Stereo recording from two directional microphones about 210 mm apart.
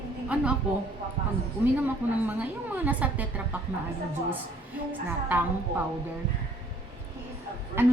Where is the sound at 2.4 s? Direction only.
10° right (ahead or behind).